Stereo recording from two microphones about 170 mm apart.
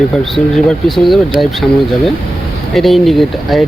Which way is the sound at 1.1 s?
Centre (ahead or behind).